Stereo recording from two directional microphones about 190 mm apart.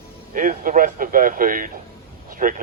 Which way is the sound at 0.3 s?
45° right (ahead or behind).